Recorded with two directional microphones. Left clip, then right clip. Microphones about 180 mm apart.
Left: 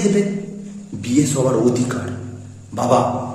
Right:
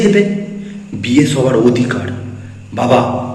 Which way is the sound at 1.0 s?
15° left (ahead or behind).